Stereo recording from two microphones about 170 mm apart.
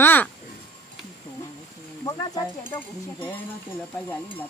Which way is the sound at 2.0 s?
20° left (ahead or behind).